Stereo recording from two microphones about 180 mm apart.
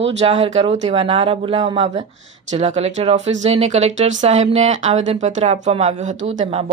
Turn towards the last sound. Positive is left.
turn(degrees=-35)  # may be behind; listen again after turning